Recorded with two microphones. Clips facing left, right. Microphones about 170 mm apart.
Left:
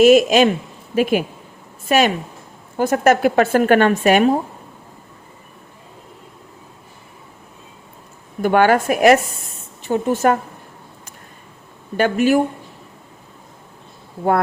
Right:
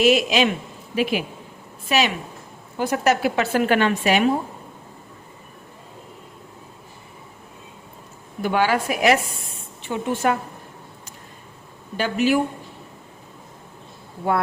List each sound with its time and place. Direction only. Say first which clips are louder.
0.0 s speech: left 7 dB; 45° left (ahead or behind)
8.4 s a woman's voice: left 6 dB; 50° left (ahead or behind)
11.9 s speech: left 5 dB; 50° left (ahead or behind)